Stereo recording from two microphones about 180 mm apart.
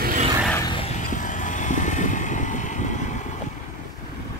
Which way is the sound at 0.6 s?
25° left (ahead or behind).